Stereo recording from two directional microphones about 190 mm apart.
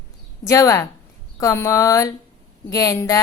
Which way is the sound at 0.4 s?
15° left (ahead or behind).